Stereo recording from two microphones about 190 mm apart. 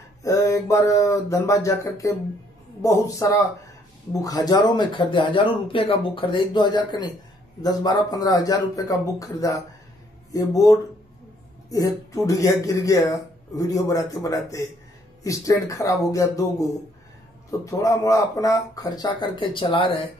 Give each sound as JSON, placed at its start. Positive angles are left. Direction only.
{"t": 0.2, "sound": "speech", "side_deg": 15}
{"t": 17.5, "sound": "speech", "side_deg": 15}